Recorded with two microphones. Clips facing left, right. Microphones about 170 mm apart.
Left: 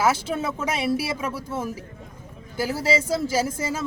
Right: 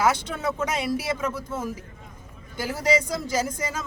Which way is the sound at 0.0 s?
5° left (ahead or behind).